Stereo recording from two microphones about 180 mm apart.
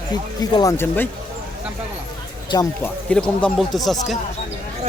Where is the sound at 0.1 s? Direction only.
20° left (ahead or behind).